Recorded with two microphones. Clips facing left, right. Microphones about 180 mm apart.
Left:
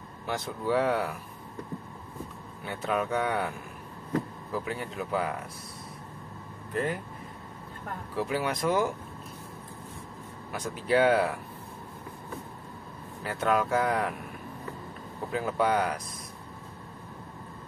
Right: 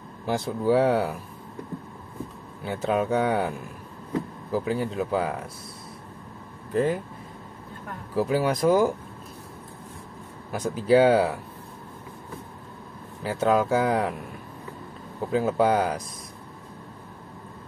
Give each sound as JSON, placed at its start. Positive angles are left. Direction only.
{"t": 0.3, "sound": "speech", "side_deg": -35}
{"t": 2.6, "sound": "speech", "side_deg": -30}
{"t": 6.7, "sound": "speech", "side_deg": -30}
{"t": 8.2, "sound": "speech", "side_deg": -35}
{"t": 10.6, "sound": "speech", "side_deg": -35}
{"t": 13.2, "sound": "speech", "side_deg": -25}
{"t": 15.3, "sound": "speech", "side_deg": -30}